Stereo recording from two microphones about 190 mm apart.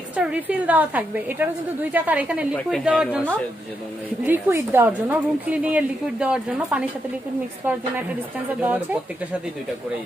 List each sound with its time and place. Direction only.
0.1 s a woman's voice: 5° right (ahead or behind)